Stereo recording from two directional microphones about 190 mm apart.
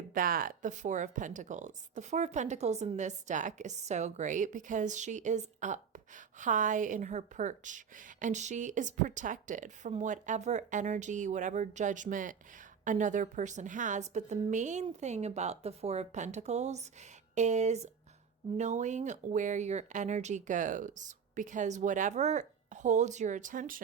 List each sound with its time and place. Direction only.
0.1 s speech: 50° right (ahead or behind)